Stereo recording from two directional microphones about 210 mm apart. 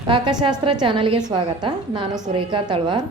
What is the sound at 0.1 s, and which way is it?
A woman's voice, 20° right (ahead or behind).